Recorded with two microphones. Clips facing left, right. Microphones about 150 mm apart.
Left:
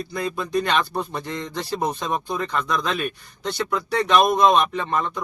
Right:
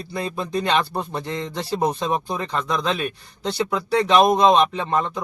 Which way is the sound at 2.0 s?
30° right (ahead or behind).